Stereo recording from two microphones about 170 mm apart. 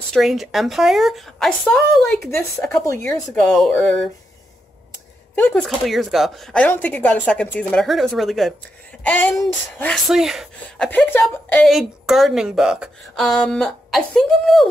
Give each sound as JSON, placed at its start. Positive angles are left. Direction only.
{"t": 0.1, "sound": "a woman's voice", "side_deg": 0}
{"t": 2.8, "sound": "speech", "side_deg": 15}
{"t": 3.1, "sound": "a woman's voice", "side_deg": 5}
{"t": 5.4, "sound": "a woman's voice", "side_deg": 5}
{"t": 10.9, "sound": "a woman's voice", "side_deg": 10}